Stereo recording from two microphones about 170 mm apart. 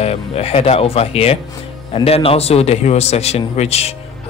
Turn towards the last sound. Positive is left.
turn(degrees=40)  # may be behind; listen again after turning